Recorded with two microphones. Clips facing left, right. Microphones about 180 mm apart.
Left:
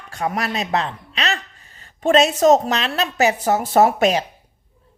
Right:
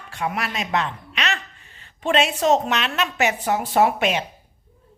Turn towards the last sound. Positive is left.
turn(degrees=40)  # may be behind; listen again after turning